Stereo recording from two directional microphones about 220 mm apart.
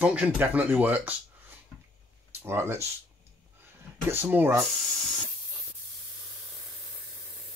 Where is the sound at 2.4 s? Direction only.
10° right (ahead or behind).